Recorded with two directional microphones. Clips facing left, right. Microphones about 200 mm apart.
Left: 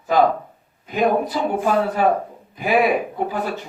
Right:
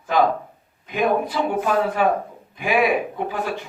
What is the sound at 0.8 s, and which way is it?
Speech, 40° left (ahead or behind).